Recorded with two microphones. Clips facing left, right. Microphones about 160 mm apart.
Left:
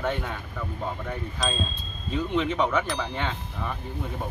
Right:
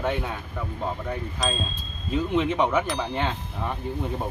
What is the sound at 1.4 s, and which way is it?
Speech, centre (ahead or behind).